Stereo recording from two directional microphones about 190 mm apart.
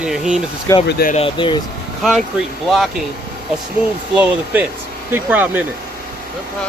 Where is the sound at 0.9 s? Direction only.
55° left (ahead or behind).